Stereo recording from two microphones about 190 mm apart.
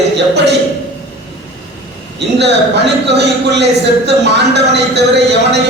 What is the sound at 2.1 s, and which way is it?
Speech, 65° right (ahead or behind).